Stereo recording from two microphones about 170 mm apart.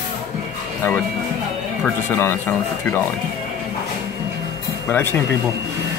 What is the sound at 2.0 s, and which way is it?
Speech, 15° left (ahead or behind).